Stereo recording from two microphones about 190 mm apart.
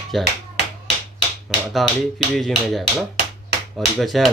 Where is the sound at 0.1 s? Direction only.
Centre (ahead or behind).